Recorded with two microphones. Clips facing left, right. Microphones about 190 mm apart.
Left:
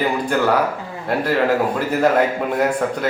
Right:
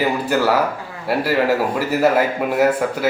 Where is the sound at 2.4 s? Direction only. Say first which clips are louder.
Right 2 dB; 5° right (ahead or behind).